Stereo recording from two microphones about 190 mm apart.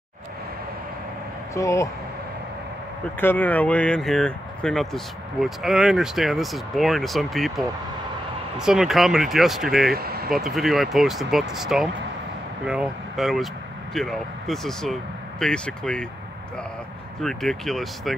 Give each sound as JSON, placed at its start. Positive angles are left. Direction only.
{"t": 1.5, "sound": "speech", "side_deg": 15}
{"t": 3.2, "sound": "speech", "side_deg": 10}
{"t": 9.9, "sound": "speech", "side_deg": -55}
{"t": 10.3, "sound": "speech", "side_deg": 0}
{"t": 17.2, "sound": "speech", "side_deg": 0}